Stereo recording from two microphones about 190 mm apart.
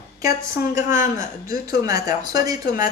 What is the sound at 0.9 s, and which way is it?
Speech, 15° right (ahead or behind).